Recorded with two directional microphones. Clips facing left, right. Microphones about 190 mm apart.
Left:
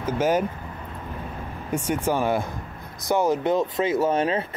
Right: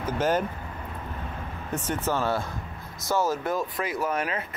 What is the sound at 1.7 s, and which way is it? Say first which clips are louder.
Speech: left 4 dB; 10° left (ahead or behind).